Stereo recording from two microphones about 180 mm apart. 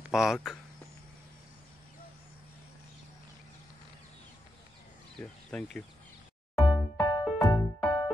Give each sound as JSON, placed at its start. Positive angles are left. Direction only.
{"t": 0.1, "sound": "speech", "side_deg": 0}
{"t": 5.1, "sound": "speech", "side_deg": 5}
{"t": 6.5, "sound": "music", "side_deg": 25}